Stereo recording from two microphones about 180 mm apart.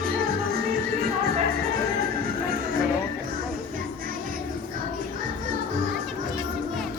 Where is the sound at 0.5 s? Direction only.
60° right (ahead or behind).